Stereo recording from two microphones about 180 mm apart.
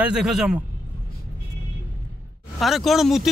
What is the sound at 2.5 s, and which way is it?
Speech, centre (ahead or behind).